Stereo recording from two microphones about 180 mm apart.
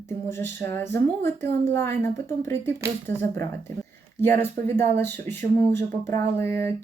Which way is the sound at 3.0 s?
10° left (ahead or behind).